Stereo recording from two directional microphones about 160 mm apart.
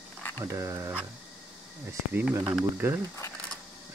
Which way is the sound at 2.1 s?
10° right (ahead or behind).